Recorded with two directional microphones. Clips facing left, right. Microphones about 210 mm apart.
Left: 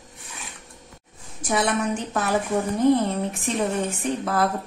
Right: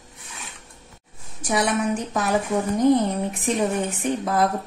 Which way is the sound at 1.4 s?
10° right (ahead or behind).